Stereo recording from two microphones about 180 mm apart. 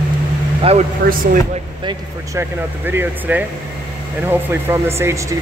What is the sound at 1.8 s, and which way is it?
Speech, 20° right (ahead or behind).